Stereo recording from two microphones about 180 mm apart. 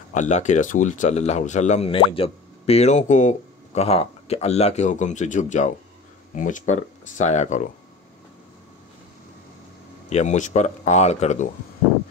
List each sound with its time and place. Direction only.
0.1 s speech: 45° left (ahead or behind)
10.0 s speech: 40° left (ahead or behind)